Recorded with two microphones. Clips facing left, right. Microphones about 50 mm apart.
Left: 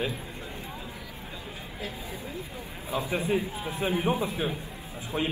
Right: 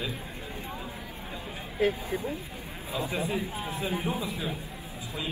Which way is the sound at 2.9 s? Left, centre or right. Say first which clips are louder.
Left 3 dB; left.